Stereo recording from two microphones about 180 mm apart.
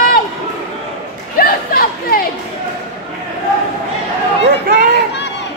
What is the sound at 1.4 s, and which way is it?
Chatter, 55° left (ahead or behind).